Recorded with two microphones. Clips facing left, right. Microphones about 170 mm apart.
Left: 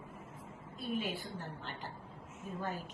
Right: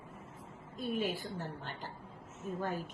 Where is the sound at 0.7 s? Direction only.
40° right (ahead or behind).